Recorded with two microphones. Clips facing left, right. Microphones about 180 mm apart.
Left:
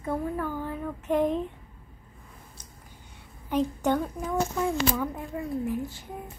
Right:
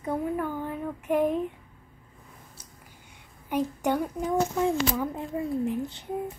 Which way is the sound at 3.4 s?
10° right (ahead or behind).